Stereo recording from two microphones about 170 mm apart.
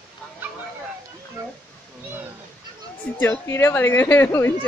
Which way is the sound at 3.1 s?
15° left (ahead or behind).